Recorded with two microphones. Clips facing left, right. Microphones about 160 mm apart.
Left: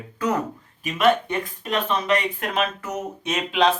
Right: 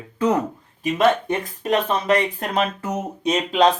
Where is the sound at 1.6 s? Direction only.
40° right (ahead or behind).